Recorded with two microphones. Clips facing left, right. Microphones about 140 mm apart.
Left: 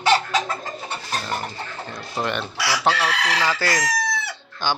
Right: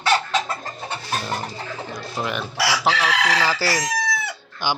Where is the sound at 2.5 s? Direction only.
90° right.